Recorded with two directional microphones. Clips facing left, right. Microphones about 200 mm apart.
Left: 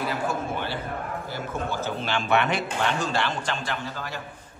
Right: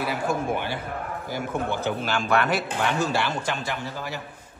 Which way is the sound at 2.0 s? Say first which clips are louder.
Left 2 dB; 5° right (ahead or behind).